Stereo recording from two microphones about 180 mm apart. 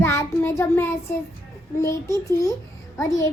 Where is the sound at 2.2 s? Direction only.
20° left (ahead or behind).